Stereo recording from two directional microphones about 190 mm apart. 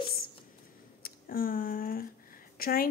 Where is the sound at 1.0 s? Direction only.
50° left (ahead or behind).